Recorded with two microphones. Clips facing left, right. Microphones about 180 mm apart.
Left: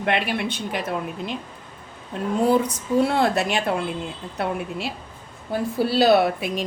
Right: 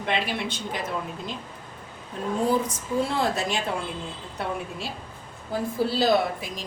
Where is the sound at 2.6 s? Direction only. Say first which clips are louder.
Left 6 dB; 65° left (ahead or behind).